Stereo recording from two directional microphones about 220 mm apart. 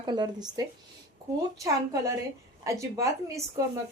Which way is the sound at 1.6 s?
15° right (ahead or behind).